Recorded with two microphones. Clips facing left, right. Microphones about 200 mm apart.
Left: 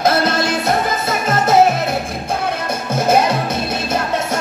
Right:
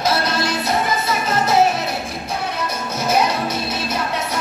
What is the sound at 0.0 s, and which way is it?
Music, 55° left (ahead or behind).